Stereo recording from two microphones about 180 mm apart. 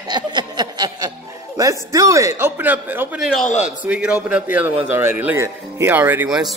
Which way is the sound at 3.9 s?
5° right (ahead or behind).